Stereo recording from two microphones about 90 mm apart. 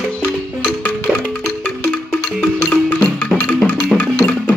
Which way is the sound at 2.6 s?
20° left (ahead or behind).